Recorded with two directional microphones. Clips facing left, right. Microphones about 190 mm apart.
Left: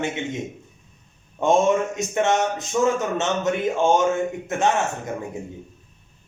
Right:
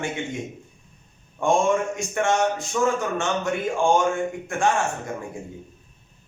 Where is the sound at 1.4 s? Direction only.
20° left (ahead or behind).